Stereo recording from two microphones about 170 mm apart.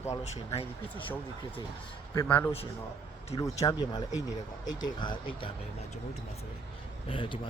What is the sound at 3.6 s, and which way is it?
Speech, 25° left (ahead or behind).